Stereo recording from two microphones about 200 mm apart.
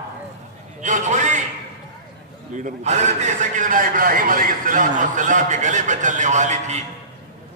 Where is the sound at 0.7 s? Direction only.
40° right (ahead or behind).